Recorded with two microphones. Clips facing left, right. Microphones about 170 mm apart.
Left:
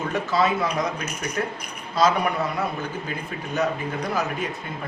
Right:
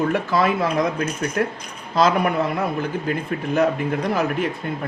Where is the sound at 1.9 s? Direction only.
55° right (ahead or behind).